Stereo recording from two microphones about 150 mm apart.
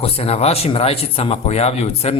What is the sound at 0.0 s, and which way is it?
Speech, 40° left (ahead or behind).